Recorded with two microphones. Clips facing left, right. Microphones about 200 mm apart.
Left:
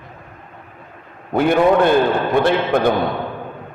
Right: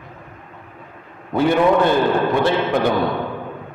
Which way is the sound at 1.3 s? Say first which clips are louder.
Left 1 dB; 55° left (ahead or behind).